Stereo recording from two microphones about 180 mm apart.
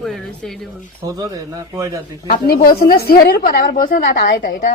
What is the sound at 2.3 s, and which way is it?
A woman's voice, 55° left (ahead or behind).